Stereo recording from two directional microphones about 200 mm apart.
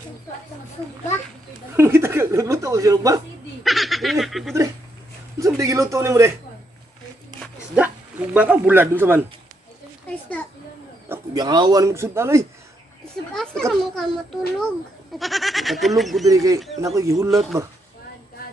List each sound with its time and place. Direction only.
1.8 s speech: 10° right (ahead or behind)
3.6 s speech: centre (ahead or behind)
5.4 s speech: 15° right (ahead or behind)
7.7 s speech: 5° right (ahead or behind)
11.1 s speech: 20° right (ahead or behind)
13.7 s speech: centre (ahead or behind)
16.3 s speech: 15° right (ahead or behind)
17.3 s speech: centre (ahead or behind)